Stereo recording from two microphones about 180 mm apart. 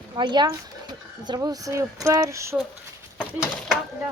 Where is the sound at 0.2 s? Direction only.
25° right (ahead or behind).